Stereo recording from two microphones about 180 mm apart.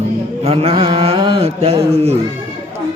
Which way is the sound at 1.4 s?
35° right (ahead or behind).